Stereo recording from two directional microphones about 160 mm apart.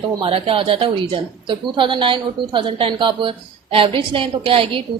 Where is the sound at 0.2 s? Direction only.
35° right (ahead or behind).